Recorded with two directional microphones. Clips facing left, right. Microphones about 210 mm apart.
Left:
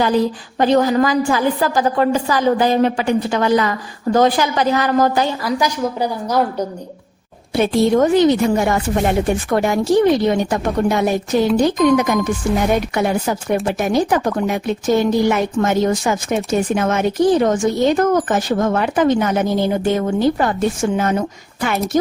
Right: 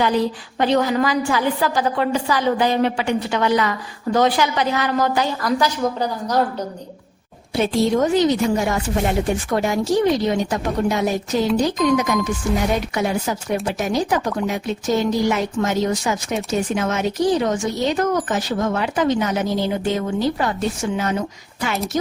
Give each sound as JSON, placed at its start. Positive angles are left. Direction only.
{"t": 0.6, "sound": "speech", "side_deg": 40}
{"t": 5.4, "sound": "a woman's voice", "side_deg": 10}
{"t": 7.5, "sound": "speech", "side_deg": 60}